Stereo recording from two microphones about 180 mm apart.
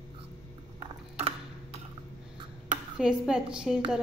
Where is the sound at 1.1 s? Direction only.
35° right (ahead or behind).